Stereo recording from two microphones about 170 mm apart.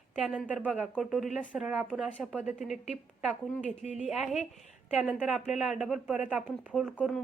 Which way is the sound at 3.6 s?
40° left (ahead or behind).